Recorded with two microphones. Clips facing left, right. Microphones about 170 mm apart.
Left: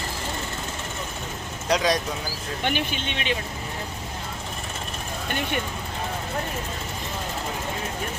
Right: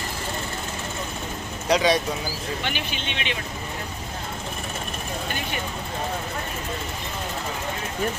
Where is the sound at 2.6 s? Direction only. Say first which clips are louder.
Left 3 dB; 50° left (ahead or behind).